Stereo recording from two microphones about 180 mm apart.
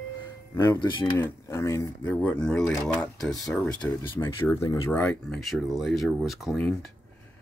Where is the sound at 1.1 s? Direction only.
15° left (ahead or behind).